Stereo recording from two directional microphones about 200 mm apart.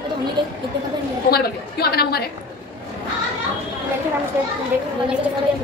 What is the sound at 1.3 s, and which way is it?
Speech, 50° left (ahead or behind).